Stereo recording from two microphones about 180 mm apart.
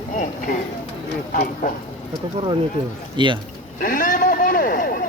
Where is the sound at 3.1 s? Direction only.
25° right (ahead or behind).